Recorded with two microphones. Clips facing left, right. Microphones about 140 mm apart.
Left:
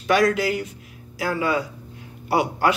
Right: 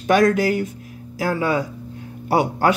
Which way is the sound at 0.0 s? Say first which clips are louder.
Right 3 dB; 45° right (ahead or behind).